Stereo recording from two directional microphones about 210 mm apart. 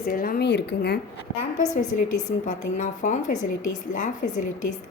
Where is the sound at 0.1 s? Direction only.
45° left (ahead or behind).